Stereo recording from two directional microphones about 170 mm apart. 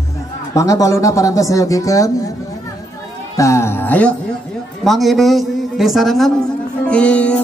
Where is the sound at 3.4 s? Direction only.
15° left (ahead or behind).